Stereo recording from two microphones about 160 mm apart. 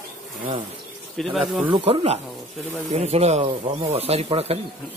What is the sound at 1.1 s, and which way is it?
Speech, centre (ahead or behind).